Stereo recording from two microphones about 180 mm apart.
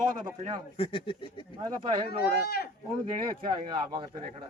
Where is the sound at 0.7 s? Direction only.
30° left (ahead or behind).